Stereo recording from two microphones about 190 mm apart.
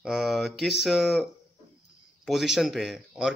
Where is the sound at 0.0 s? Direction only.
Centre (ahead or behind).